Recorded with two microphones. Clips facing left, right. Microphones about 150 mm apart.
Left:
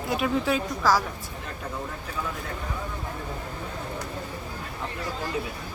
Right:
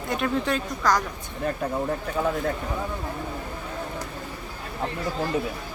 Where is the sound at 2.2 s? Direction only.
55° right (ahead or behind).